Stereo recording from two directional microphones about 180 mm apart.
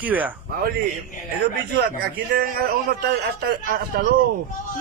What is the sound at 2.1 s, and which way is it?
A man's voice, 55° right (ahead or behind).